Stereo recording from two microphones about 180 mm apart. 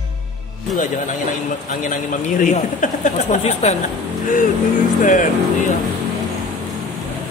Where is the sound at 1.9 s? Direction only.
45° left (ahead or behind).